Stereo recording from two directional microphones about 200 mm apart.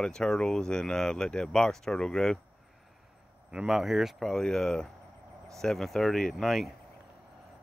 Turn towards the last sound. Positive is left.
turn(degrees=0)  # may be behind; listen again after turning